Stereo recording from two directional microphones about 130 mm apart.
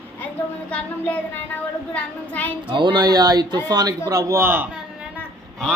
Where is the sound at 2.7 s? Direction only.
35° right (ahead or behind); by 4.7 s 15° right (ahead or behind).